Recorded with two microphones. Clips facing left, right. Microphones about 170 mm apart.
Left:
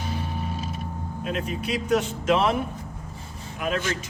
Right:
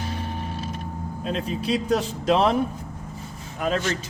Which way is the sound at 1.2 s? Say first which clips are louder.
Right 2 dB; 30° right (ahead or behind).